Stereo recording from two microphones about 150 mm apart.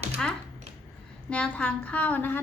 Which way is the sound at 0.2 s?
5° left (ahead or behind).